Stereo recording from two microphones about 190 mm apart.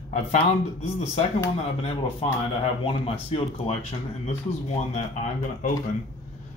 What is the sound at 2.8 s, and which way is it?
Speech, 30° left (ahead or behind).